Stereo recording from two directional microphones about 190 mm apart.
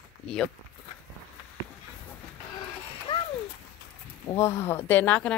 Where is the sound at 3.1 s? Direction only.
25° left (ahead or behind).